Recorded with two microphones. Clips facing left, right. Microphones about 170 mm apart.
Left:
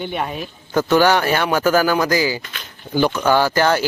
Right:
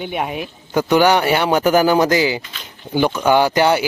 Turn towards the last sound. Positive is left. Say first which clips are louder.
# right 2 dB
turn(degrees=-15)  # may be behind; listen again after turning